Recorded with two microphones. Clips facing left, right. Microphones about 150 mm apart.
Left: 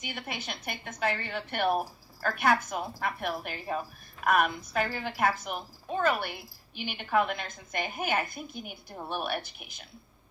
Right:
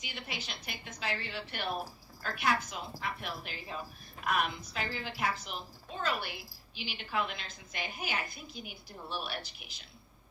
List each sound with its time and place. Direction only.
0.0 s a woman's voice: 55° left (ahead or behind)